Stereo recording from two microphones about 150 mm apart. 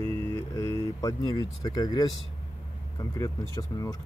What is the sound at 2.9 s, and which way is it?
Speech, 20° left (ahead or behind).